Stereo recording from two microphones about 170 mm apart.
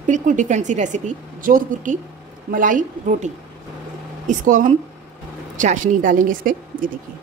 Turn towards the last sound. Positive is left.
turn(degrees=-55)  # may be behind; listen again after turning